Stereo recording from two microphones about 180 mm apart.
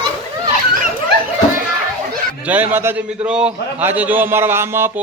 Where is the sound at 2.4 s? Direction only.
10° right (ahead or behind).